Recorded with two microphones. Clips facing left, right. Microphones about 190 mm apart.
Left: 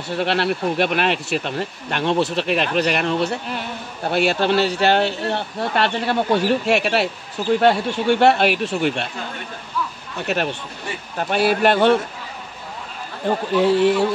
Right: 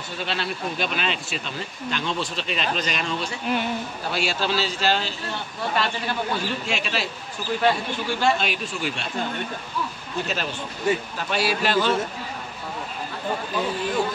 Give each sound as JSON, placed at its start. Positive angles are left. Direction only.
{"t": 0.1, "sound": "speech", "side_deg": 65}
{"t": 10.2, "sound": "speech", "side_deg": 65}
{"t": 13.2, "sound": "a man's voice", "side_deg": 70}